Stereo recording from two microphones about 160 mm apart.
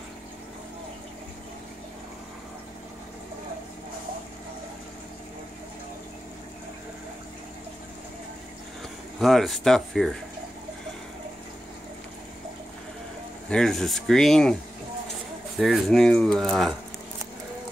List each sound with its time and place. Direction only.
9.2 s speech: centre (ahead or behind)
13.5 s speech: centre (ahead or behind)